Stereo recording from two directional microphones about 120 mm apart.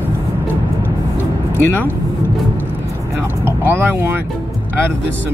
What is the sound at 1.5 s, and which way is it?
Speech, 15° left (ahead or behind).